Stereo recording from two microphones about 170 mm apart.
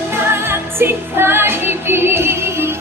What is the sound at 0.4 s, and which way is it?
Music, 15° right (ahead or behind).